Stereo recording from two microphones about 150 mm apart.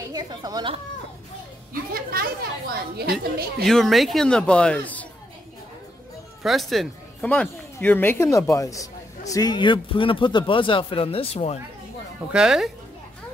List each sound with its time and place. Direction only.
0.1 s speech: 25° right (ahead or behind)
1.7 s a child's voice: 80° right
2.7 s a woman's voice: 90° right
3.6 s speech: centre (ahead or behind)
6.4 s speech: centre (ahead or behind); by 11.6 s 40° left (ahead or behind)
12.3 s speech: 5° right (ahead or behind)